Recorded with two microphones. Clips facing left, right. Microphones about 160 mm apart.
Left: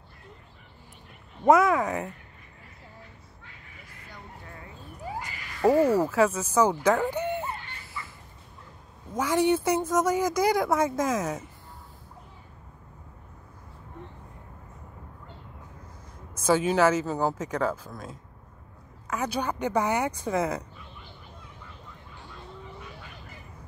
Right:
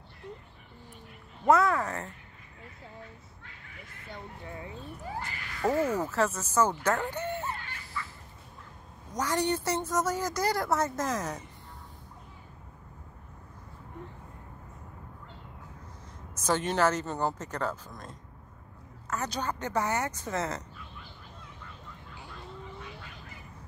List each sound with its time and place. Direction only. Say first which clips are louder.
1.4 s speech: left 4 dB; 20° left (ahead or behind)
4.1 s fowl: right 4 dB; 20° right (ahead or behind)
5.2 s speech: left 7 dB; 10° left (ahead or behind)
9.1 s speech: left 6 dB; 10° left (ahead or behind)
16.4 s speech: left 5 dB; 5° left (ahead or behind)